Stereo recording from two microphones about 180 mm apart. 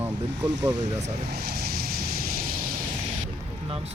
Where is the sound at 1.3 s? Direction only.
60° right (ahead or behind).